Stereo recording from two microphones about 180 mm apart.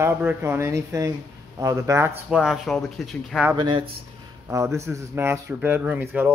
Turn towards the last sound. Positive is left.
turn(degrees=-10)  # may be behind; listen again after turning